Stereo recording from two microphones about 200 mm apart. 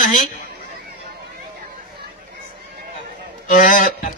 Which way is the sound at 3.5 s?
40° left (ahead or behind).